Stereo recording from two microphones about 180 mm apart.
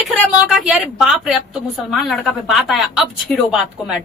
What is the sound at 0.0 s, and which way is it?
A woman's voice, centre (ahead or behind).